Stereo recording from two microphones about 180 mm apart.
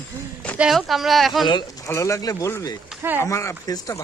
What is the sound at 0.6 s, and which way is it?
Speech, centre (ahead or behind).